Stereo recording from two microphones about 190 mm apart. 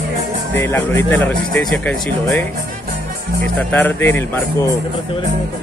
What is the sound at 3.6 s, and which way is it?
Speech, 10° left (ahead or behind).